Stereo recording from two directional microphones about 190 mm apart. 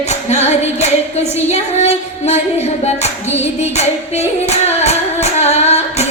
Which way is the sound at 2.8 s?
35° left (ahead or behind).